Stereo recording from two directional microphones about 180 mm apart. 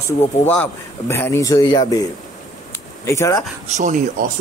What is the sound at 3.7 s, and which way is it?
Speech, 45° right (ahead or behind).